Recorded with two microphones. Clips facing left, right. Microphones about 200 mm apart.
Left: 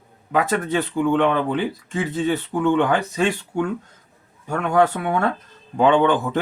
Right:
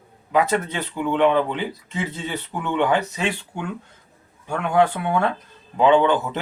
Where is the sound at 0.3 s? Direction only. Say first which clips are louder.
Even; 50° left (ahead or behind).